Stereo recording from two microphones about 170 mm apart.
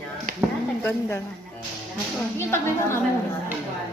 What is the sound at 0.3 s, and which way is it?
Chop, 50° right (ahead or behind).